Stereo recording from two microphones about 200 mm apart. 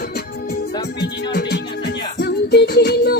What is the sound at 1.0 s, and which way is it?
Music, 55° left (ahead or behind).